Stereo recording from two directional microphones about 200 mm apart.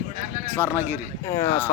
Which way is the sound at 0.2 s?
40° right (ahead or behind).